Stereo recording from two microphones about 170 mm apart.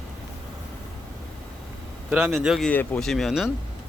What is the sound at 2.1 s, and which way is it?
Speech, 10° right (ahead or behind).